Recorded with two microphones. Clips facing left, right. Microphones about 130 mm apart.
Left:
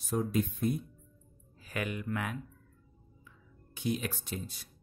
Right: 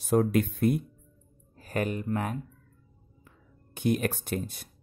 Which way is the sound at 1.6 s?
45° right (ahead or behind).